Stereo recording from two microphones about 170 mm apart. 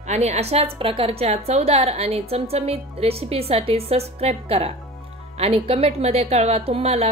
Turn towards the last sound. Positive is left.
turn(degrees=-35)  # may be behind; listen again after turning